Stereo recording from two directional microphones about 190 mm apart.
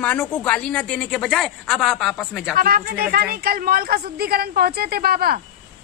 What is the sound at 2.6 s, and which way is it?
A woman's voice, 50° right (ahead or behind).